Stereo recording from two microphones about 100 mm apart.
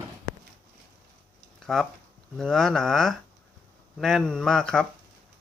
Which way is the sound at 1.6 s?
5° left (ahead or behind).